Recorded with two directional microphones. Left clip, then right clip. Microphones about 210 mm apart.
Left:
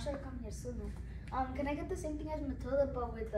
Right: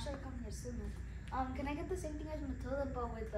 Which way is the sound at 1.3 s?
Centre (ahead or behind).